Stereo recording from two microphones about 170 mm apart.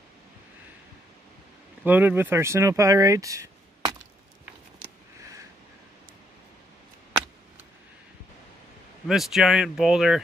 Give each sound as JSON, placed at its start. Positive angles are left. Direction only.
{"t": 1.9, "sound": "speech", "side_deg": -10}
{"t": 9.0, "sound": "speech", "side_deg": 0}